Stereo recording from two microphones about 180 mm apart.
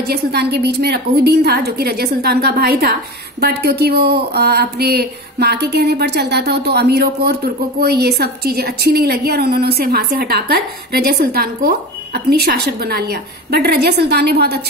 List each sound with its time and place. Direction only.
0.1 s a woman's voice: 65° right (ahead or behind)